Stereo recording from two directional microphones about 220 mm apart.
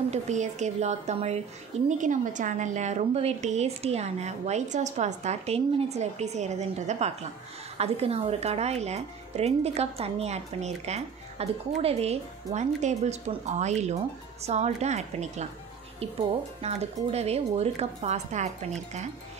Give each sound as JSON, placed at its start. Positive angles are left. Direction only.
{"t": 0.1, "sound": "a woman's voice", "side_deg": -30}